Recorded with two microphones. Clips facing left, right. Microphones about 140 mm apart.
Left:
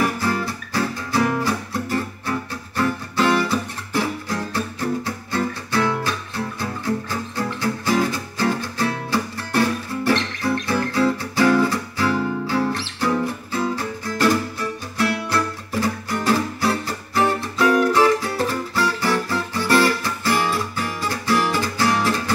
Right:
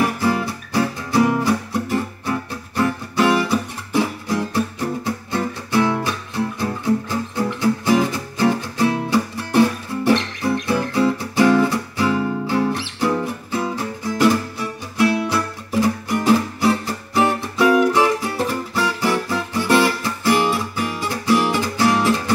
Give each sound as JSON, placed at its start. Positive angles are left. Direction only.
{"t": 0.2, "sound": "music", "side_deg": -15}
{"t": 18.8, "sound": "guitar", "side_deg": -15}